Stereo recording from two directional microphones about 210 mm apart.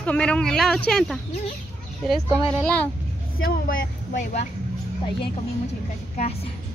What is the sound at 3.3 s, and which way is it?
Speech, 45° left (ahead or behind).